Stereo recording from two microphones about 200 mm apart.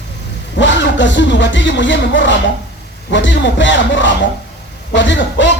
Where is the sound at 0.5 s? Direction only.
65° left (ahead or behind).